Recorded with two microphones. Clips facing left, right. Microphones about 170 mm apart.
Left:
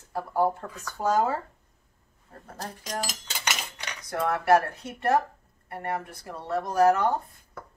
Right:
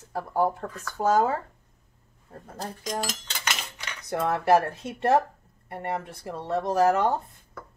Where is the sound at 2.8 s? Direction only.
5° left (ahead or behind).